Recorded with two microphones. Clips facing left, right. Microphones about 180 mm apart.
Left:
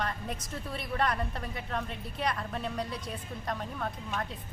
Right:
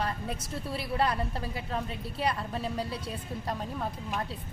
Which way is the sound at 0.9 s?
30° right (ahead or behind).